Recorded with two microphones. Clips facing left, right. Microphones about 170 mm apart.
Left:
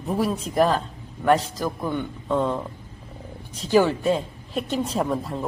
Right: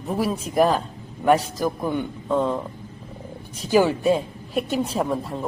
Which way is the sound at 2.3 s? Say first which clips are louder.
Right 1 dB; centre (ahead or behind).